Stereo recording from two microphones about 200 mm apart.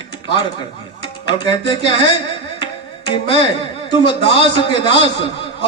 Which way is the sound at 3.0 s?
25° left (ahead or behind).